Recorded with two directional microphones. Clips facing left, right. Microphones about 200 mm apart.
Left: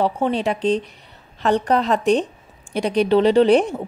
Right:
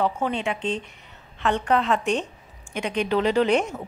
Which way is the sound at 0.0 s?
35° left (ahead or behind).